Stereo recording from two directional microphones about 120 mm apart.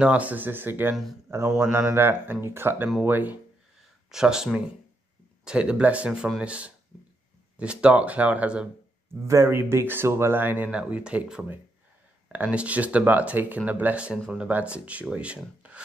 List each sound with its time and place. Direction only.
0.0 s speech: 10° right (ahead or behind)
4.1 s speech: 5° right (ahead or behind)
9.3 s speech: 20° right (ahead or behind)